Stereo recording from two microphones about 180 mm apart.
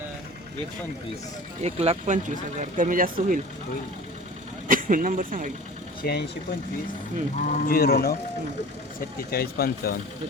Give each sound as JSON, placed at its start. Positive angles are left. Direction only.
{"t": 1.6, "sound": "speech", "side_deg": -35}
{"t": 4.7, "sound": "speech", "side_deg": -50}
{"t": 6.0, "sound": "speech", "side_deg": 65}
{"t": 7.3, "sound": "speech", "side_deg": 55}
{"t": 9.3, "sound": "speech", "side_deg": 55}